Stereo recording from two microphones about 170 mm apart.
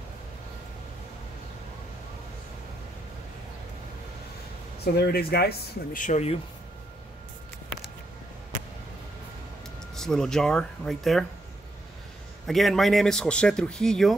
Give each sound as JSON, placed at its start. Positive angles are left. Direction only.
{"t": 4.9, "sound": "speech", "side_deg": 65}
{"t": 6.0, "sound": "speech", "side_deg": 40}
{"t": 9.9, "sound": "speech", "side_deg": 5}
{"t": 12.4, "sound": "speech", "side_deg": 0}